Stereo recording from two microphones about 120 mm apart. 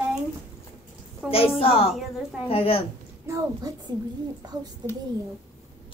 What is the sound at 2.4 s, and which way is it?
Speech, 55° left (ahead or behind).